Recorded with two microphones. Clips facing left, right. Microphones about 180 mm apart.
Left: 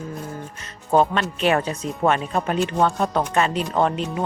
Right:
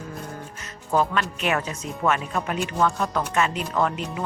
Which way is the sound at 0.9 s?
30° left (ahead or behind).